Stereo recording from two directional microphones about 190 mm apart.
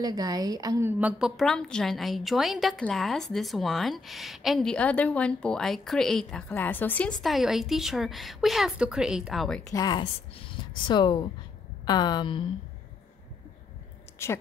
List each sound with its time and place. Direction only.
0.0 s a woman's voice: 20° right (ahead or behind); by 9.6 s centre (ahead or behind)
9.7 s speech: 20° left (ahead or behind)
14.1 s a woman's voice: 15° left (ahead or behind)